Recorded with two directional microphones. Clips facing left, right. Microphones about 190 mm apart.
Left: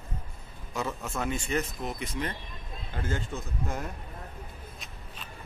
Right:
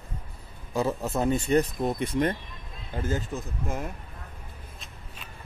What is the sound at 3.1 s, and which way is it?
Speech, centre (ahead or behind).